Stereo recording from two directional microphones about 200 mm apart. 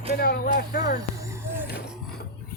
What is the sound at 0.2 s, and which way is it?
Speech, 50° left (ahead or behind).